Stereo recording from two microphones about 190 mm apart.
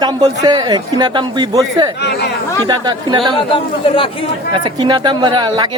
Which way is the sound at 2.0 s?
60° left (ahead or behind).